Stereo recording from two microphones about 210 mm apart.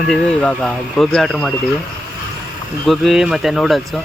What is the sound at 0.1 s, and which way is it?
Speech, 5° left (ahead or behind).